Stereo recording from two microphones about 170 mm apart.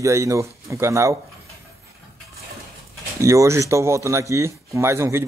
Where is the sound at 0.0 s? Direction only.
20° right (ahead or behind).